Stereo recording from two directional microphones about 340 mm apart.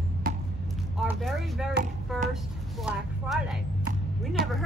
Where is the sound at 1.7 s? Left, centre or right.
Right.